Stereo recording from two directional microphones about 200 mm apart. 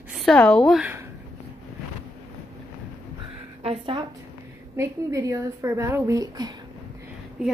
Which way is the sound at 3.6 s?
25° right (ahead or behind).